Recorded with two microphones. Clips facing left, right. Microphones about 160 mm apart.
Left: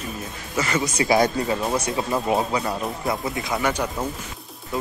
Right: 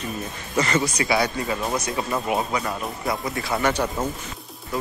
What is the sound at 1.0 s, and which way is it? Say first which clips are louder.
Speech: left 7 dB; 45° left (ahead or behind).